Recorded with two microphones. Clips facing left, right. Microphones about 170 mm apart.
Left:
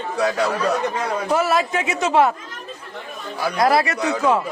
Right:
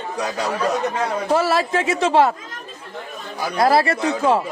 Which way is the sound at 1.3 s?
30° right (ahead or behind).